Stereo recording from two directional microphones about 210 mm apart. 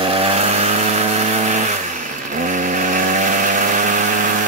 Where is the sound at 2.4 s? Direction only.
35° right (ahead or behind).